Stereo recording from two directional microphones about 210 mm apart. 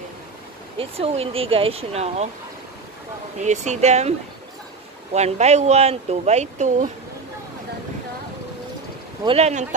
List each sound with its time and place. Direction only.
0.7 s speech: 30° right (ahead or behind)
3.3 s speech: 35° right (ahead or behind)
5.1 s speech: 30° right (ahead or behind)
9.2 s speech: 30° right (ahead or behind)